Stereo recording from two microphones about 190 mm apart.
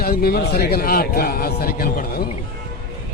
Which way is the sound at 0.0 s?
50° left (ahead or behind).